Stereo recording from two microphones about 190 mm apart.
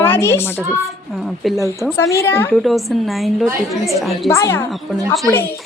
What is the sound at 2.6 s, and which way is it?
A woman's voice, centre (ahead or behind).